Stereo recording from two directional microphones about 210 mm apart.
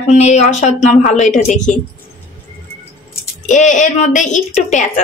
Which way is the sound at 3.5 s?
35° left (ahead or behind).